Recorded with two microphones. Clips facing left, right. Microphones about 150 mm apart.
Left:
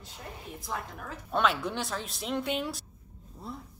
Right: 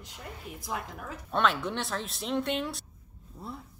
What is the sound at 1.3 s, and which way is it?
A woman's voice, centre (ahead or behind).